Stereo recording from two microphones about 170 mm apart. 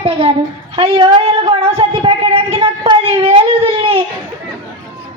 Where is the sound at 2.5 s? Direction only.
25° right (ahead or behind).